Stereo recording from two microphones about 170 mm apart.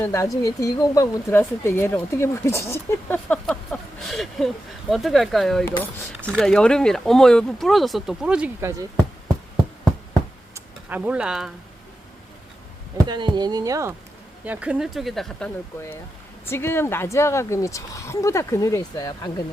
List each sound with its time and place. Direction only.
0.0 s speech: 15° left (ahead or behind); by 8.4 s 5° right (ahead or behind)
10.5 s speech: 10° right (ahead or behind)
13.1 s speech: 25° right (ahead or behind)
14.4 s speech: 10° right (ahead or behind)
16.5 s speech: 15° left (ahead or behind)